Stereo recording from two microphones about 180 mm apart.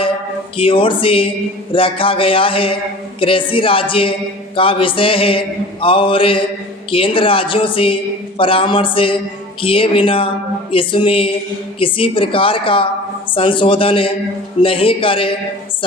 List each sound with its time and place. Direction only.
0.5 s mantra: 30° left (ahead or behind)
3.2 s a woman's voice: 30° left (ahead or behind)
3.5 s mantra: 30° left (ahead or behind)